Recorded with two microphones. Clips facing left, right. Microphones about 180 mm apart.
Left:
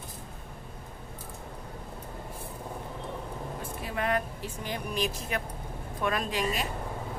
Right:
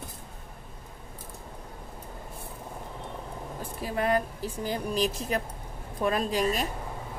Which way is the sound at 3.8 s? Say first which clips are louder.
Right 4 dB; 35° right (ahead or behind).